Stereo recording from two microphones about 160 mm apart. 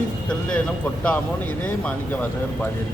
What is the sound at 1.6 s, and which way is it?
Speech, 10° left (ahead or behind).